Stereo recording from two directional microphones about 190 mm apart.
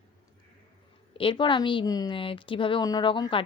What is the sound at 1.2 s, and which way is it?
A woman's voice, 25° left (ahead or behind).